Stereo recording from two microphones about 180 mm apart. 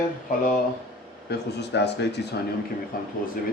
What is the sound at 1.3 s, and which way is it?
Speech, 70° left (ahead or behind).